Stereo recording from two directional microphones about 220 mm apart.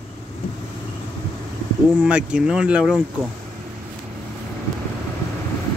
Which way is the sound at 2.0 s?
5° right (ahead or behind).